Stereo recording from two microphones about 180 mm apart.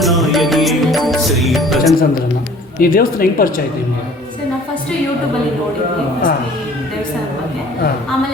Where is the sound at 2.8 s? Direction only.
55° left (ahead or behind).